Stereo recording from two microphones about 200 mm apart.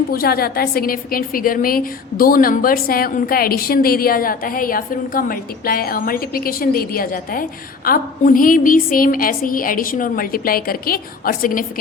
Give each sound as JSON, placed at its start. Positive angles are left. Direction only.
{"t": 0.1, "sound": "a woman's voice", "side_deg": 50}